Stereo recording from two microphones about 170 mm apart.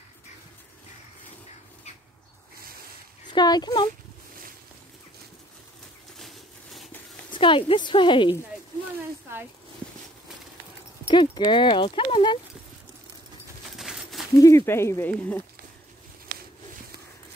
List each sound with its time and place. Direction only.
3.3 s speech: 25° left (ahead or behind)
6.1 s a sound: centre (ahead or behind)
7.2 s a woman's voice: 30° left (ahead or behind)
11.1 s a woman's voice: 30° left (ahead or behind)
13.7 s a sound: centre (ahead or behind)
14.4 s speech: 15° left (ahead or behind)